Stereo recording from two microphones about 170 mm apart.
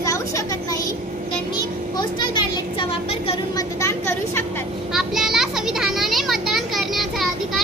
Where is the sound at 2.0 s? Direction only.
25° left (ahead or behind).